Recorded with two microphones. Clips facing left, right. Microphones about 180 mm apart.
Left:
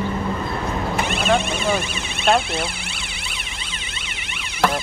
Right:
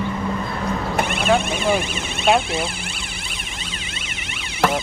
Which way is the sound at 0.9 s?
55° right (ahead or behind).